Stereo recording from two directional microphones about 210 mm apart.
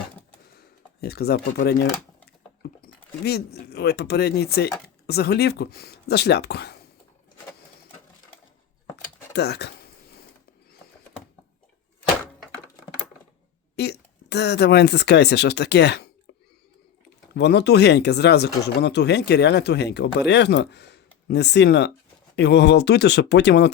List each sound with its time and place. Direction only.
1.0 s speech: 50° left (ahead or behind)
3.2 s speech: 50° left (ahead or behind)
9.3 s speech: 50° left (ahead or behind)
13.7 s speech: 50° left (ahead or behind)
17.3 s speech: 50° left (ahead or behind)